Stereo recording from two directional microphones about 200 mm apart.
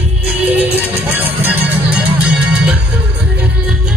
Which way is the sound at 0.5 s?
10° right (ahead or behind).